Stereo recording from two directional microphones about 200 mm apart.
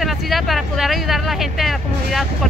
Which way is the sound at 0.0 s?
Centre (ahead or behind).